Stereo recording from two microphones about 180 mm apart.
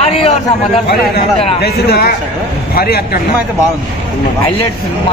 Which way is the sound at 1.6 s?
60° left (ahead or behind).